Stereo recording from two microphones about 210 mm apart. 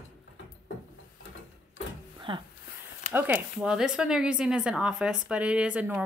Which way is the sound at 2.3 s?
20° right (ahead or behind).